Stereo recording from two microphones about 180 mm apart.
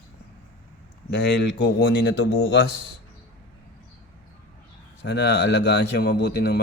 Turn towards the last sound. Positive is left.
turn(degrees=65)  # may be behind; listen again after turning